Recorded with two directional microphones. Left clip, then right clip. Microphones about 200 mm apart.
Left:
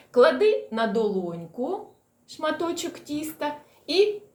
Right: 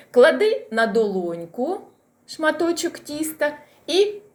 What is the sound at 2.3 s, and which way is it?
Speech, 10° right (ahead or behind).